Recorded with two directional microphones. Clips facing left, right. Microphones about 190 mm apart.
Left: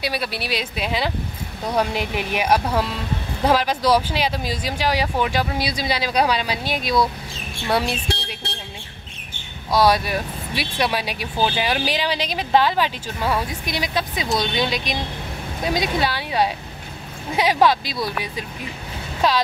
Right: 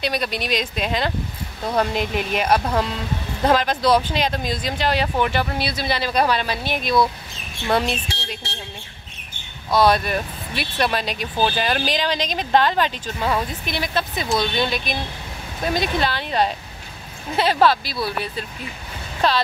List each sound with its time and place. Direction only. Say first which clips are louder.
0.0 s speech: right 2 dB; 5° left (ahead or behind)
9.7 s speech: even; 10° left (ahead or behind)
19.2 s speech: even; 10° left (ahead or behind)